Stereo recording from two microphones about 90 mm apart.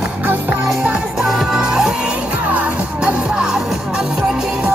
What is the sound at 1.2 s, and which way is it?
Music, 5° right (ahead or behind).